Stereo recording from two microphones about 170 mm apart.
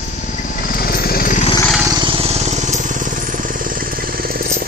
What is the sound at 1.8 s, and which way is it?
Vehicle, 25° right (ahead or behind).